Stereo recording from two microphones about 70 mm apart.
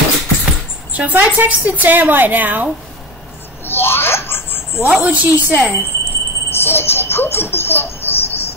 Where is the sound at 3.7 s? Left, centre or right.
Left.